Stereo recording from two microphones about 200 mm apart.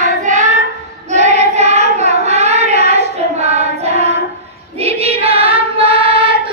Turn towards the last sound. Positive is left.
turn(degrees=-25)  # may be behind; listen again after turning